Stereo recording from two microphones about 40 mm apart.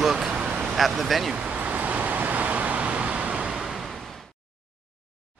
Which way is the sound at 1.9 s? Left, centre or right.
Right.